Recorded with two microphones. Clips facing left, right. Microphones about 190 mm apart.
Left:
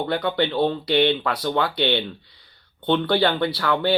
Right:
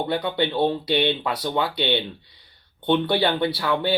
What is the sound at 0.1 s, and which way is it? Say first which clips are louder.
Speech: left 1 dB; 20° right (ahead or behind).